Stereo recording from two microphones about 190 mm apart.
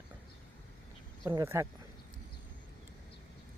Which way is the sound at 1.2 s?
20° right (ahead or behind).